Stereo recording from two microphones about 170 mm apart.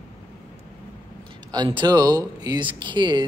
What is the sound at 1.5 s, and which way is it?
Speech, 25° right (ahead or behind).